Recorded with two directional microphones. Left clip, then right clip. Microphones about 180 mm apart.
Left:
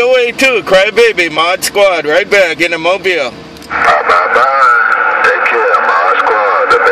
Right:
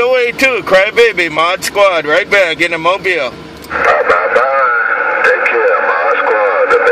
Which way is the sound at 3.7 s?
45° left (ahead or behind).